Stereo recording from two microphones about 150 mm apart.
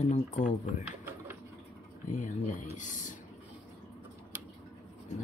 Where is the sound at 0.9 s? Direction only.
15° right (ahead or behind).